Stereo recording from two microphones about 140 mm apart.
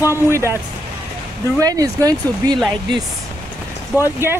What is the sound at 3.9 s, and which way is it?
Speech, 15° right (ahead or behind).